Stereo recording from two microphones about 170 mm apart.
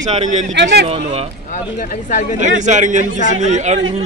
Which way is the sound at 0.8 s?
35° right (ahead or behind).